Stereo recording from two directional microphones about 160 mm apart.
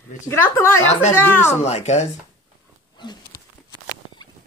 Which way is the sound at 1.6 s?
45° left (ahead or behind).